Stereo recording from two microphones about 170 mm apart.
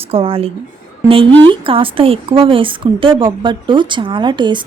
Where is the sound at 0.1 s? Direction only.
35° right (ahead or behind).